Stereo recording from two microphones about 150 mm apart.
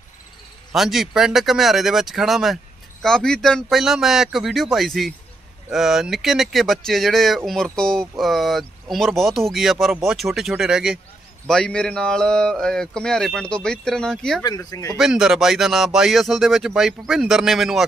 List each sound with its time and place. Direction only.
0.7 s speech: centre (ahead or behind)
11.4 s speech: 5° left (ahead or behind)
14.4 s speech: 25° left (ahead or behind)
15.0 s speech: centre (ahead or behind)